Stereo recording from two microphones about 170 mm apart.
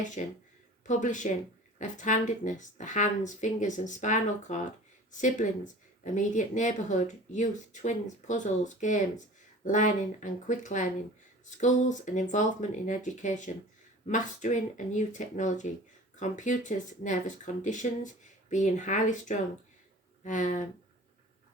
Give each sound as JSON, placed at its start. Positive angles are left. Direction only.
{"t": 0.0, "sound": "speech", "side_deg": 45}